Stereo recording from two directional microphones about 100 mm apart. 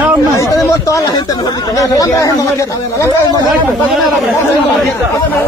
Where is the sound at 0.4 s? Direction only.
35° left (ahead or behind).